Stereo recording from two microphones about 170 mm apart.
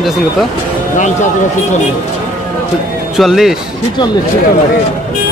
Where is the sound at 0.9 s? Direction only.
45° left (ahead or behind).